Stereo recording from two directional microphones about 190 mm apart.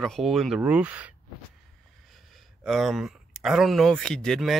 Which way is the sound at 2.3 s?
Centre (ahead or behind).